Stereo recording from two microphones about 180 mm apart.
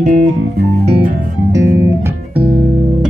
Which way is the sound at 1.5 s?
15° right (ahead or behind).